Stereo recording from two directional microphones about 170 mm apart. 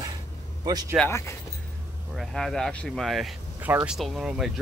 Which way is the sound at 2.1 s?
Centre (ahead or behind).